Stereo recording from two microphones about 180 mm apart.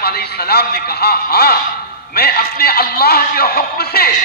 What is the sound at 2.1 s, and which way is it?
A man's voice, 60° left (ahead or behind).